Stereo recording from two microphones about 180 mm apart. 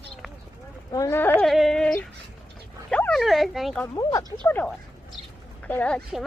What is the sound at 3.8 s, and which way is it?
Speech, 20° left (ahead or behind).